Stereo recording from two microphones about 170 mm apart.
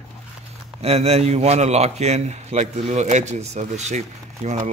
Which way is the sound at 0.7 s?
40° right (ahead or behind).